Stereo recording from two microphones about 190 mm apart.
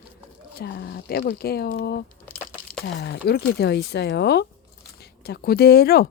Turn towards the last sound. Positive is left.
turn(degrees=55)  # may be behind; listen again after turning